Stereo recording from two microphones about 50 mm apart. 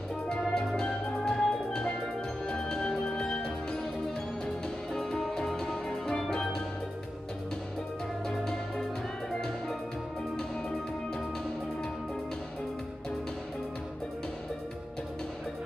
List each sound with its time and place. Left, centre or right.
0.4 s music: centre
4.9 s music: centre
8.3 s music: centre